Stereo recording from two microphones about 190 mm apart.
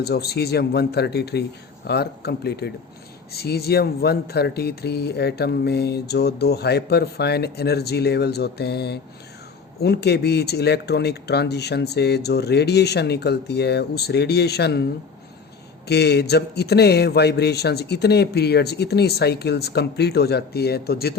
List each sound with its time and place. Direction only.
0.0 s speech: 55° left (ahead or behind)
15.9 s speech: 60° left (ahead or behind)